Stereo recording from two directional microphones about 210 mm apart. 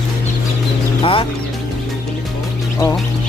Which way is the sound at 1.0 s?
25° left (ahead or behind).